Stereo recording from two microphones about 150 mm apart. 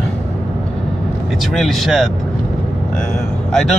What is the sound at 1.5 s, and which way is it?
Speech, centre (ahead or behind).